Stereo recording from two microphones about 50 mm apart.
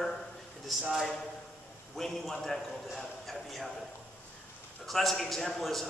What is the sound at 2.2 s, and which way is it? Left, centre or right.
A man's voice, centre.